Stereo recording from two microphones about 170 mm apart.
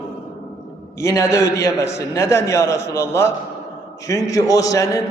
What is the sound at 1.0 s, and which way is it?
A man's voice, 15° left (ahead or behind).